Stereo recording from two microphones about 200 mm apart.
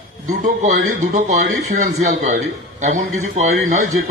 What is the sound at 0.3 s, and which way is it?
A man's voice, 40° right (ahead or behind).